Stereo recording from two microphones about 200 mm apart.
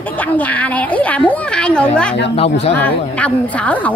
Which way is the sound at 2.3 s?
30° left (ahead or behind).